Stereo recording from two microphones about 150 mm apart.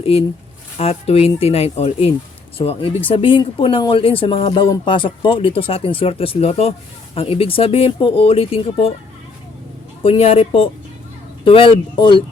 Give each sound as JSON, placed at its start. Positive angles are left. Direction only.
{"t": 0.0, "sound": "speech", "side_deg": 40}
{"t": 10.0, "sound": "speech", "side_deg": 40}